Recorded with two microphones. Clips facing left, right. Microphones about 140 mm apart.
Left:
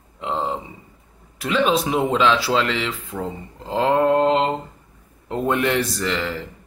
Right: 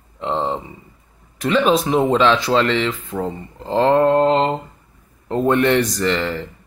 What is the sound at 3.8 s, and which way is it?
Mantra, 5° left (ahead or behind).